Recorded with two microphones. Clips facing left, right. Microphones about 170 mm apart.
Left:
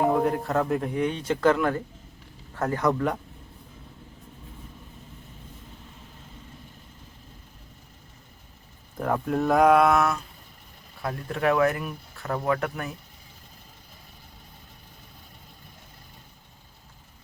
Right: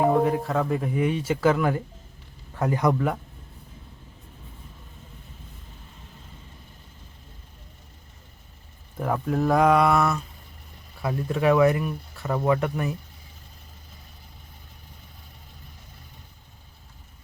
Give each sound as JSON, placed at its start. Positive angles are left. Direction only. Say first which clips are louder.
{"t": 0.2, "sound": "a man's voice", "louder": "right 1 dB", "side_deg": 0}
{"t": 9.0, "sound": "speech", "louder": "even", "side_deg": 0}